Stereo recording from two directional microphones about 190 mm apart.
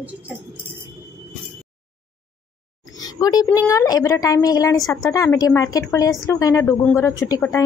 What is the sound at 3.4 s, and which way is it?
A woman's voice, 15° left (ahead or behind).